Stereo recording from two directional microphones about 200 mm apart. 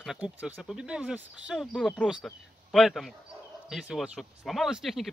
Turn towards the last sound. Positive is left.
turn(degrees=0)  # may be behind; listen again after turning